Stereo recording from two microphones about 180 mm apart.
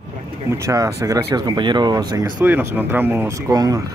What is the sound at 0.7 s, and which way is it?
Speech, 20° right (ahead or behind).